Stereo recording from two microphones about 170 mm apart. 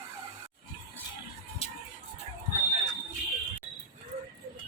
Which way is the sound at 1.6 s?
35° left (ahead or behind).